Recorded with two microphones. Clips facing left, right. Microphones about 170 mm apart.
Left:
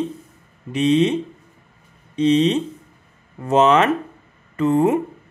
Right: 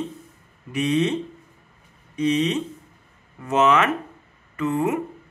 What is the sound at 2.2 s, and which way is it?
Speech, 25° left (ahead or behind).